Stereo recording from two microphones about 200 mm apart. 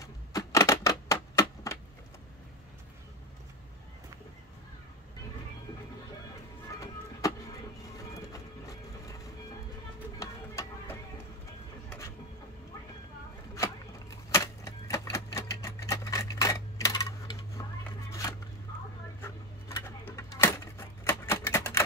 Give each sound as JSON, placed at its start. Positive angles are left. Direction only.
{"t": 0.0, "sound": "typewriter", "side_deg": 15}
{"t": 6.8, "sound": "music", "side_deg": 15}
{"t": 8.3, "sound": "a sound", "side_deg": 15}
{"t": 10.1, "sound": "music", "side_deg": 15}
{"t": 14.3, "sound": "typewriter", "side_deg": 15}
{"t": 19.2, "sound": "a sound", "side_deg": 15}